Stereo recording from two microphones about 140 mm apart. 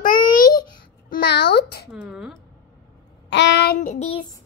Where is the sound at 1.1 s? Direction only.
90° left.